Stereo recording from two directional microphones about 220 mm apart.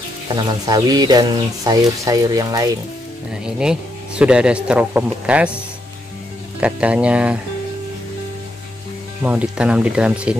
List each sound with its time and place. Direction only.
0.4 s speech: 20° right (ahead or behind)
3.4 s speech: 5° right (ahead or behind)
6.6 s speech: 5° right (ahead or behind)
9.2 s speech: 5° right (ahead or behind)